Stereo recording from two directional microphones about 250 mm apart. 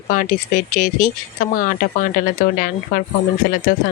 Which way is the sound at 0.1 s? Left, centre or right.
Left.